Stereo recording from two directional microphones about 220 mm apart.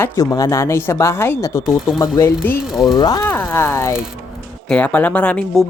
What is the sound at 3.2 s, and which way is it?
Speech, 5° left (ahead or behind).